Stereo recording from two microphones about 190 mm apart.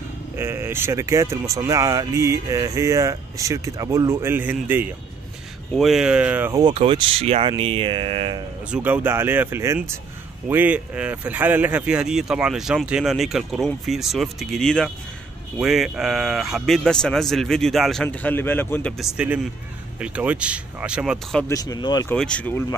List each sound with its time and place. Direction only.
0.4 s speech: 10° right (ahead or behind)
6.5 s speech: 30° right (ahead or behind)
8.6 s speech: 5° right (ahead or behind)
19.1 s speech: 5° right (ahead or behind)
21.5 s speech: 20° left (ahead or behind)
22.1 s speech: 5° left (ahead or behind)